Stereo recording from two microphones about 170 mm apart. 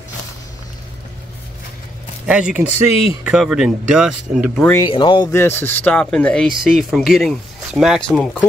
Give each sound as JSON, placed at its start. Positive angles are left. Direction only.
{"t": 2.2, "sound": "speech", "side_deg": -5}
{"t": 4.6, "sound": "speech", "side_deg": 20}
{"t": 5.3, "sound": "speech", "side_deg": 15}